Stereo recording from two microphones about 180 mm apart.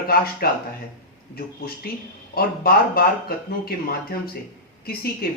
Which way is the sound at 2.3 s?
60° left (ahead or behind).